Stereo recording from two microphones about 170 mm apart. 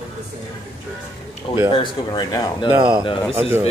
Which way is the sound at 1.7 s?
25° left (ahead or behind).